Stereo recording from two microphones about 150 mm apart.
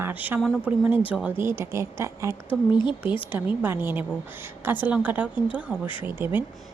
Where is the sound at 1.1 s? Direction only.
10° right (ahead or behind).